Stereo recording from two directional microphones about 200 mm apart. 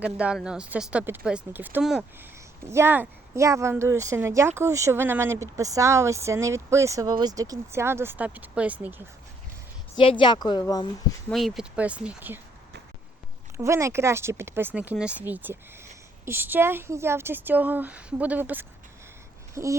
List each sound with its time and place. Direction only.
0.0 s speech: 5° right (ahead or behind)
10.0 s speech: 25° left (ahead or behind)
11.3 s speech: centre (ahead or behind)
13.6 s speech: 15° right (ahead or behind)